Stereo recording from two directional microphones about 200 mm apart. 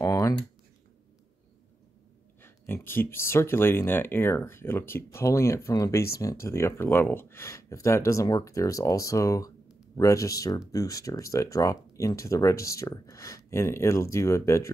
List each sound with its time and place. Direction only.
0.0 s typing: 15° left (ahead or behind)
2.4 s speech: 10° left (ahead or behind)